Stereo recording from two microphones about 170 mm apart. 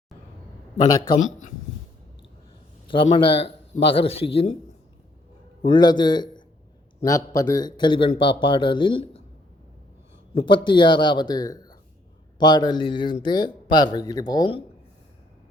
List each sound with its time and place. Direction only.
0.8 s a man's voice: 25° left (ahead or behind)
2.8 s a man's voice: 30° left (ahead or behind)
5.6 s a man's voice: 25° left (ahead or behind)
10.3 s a man's voice: 30° left (ahead or behind)